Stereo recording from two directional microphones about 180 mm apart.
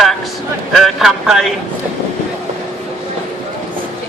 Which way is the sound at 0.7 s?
Centre (ahead or behind).